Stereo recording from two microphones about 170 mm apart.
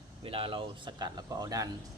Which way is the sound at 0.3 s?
35° right (ahead or behind).